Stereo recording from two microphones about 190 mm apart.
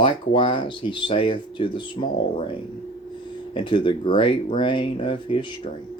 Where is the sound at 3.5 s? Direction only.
25° left (ahead or behind).